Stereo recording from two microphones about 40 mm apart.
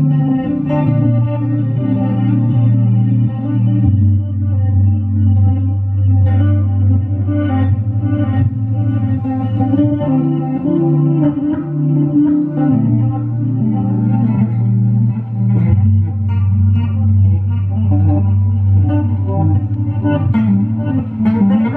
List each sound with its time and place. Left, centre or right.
0.1 s music: centre
6.4 s music: centre
15.5 s music: centre
17.7 s music: centre